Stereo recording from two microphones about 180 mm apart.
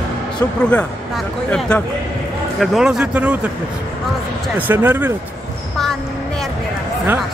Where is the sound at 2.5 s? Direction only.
Centre (ahead or behind).